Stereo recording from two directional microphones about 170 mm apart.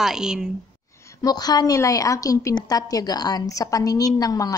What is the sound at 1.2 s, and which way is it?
A woman's voice, 25° left (ahead or behind).